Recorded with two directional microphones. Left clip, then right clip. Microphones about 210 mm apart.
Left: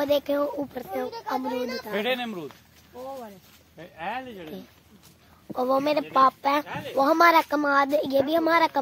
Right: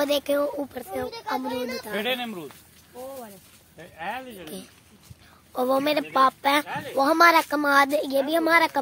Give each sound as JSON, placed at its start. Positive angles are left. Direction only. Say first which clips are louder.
{"t": 0.0, "sound": "speech", "louder": "right 1 dB", "side_deg": -10}
{"t": 1.9, "sound": "speech", "louder": "left 1 dB", "side_deg": 20}
{"t": 3.7, "sound": "speech", "louder": "even", "side_deg": 40}
{"t": 5.6, "sound": "speech", "louder": "right 1 dB", "side_deg": -10}
{"t": 6.7, "sound": "speech", "louder": "right 2 dB", "side_deg": 5}
{"t": 7.0, "sound": "speech", "louder": "right 1 dB", "side_deg": -5}